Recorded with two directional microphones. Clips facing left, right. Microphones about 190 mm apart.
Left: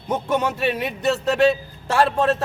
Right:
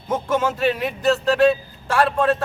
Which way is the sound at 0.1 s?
20° left (ahead or behind).